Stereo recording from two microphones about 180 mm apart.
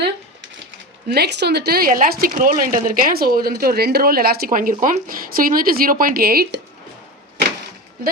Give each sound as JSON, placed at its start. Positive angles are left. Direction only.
{"t": 1.0, "sound": "speech", "side_deg": -60}